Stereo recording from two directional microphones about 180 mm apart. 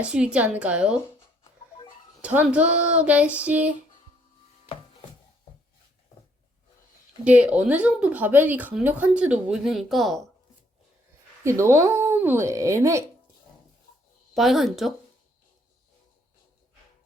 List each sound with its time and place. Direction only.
0.0 s a woman's voice: 5° right (ahead or behind)
2.2 s speech: 10° right (ahead or behind)
7.3 s speech: 10° right (ahead or behind)
11.4 s speech: 15° right (ahead or behind)
14.3 s a woman's voice: centre (ahead or behind)